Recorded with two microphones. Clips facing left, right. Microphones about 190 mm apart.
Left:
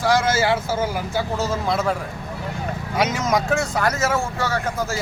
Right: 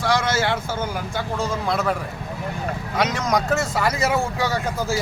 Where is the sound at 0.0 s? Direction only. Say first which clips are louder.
Left 2 dB; 5° left (ahead or behind).